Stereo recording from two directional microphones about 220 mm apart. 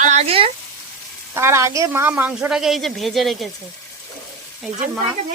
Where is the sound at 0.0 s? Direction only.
30° right (ahead or behind).